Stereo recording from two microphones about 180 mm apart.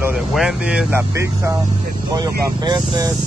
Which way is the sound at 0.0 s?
5° right (ahead or behind).